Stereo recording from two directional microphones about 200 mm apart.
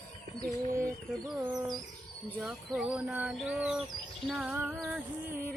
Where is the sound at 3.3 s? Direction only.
5° right (ahead or behind).